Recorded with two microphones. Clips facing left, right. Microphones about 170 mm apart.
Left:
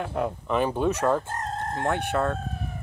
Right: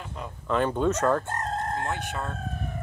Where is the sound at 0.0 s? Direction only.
65° left (ahead or behind).